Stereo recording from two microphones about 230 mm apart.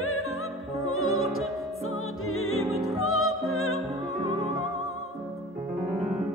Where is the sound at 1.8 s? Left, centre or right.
Left.